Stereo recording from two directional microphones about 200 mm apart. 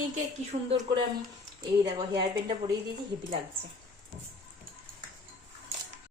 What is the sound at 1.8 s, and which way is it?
Speech, 20° right (ahead or behind).